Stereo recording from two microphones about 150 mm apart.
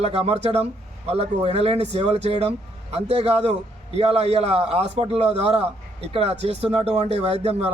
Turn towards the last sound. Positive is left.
turn(degrees=-45)  # may be behind; listen again after turning